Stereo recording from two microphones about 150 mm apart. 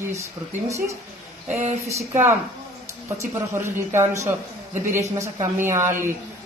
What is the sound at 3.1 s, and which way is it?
Speech, 20° right (ahead or behind).